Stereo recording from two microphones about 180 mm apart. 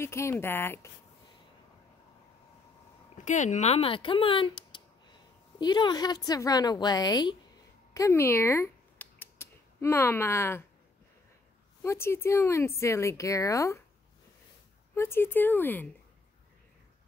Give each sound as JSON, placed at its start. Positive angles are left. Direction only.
{"t": 0.0, "sound": "speech", "side_deg": 15}
{"t": 3.3, "sound": "a woman's voice", "side_deg": 40}
{"t": 7.9, "sound": "a sound", "side_deg": 15}
{"t": 11.8, "sound": "speech", "side_deg": 15}
{"t": 15.0, "sound": "speech", "side_deg": 15}